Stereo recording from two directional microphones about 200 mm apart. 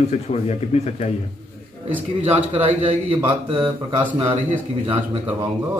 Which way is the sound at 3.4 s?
25° right (ahead or behind).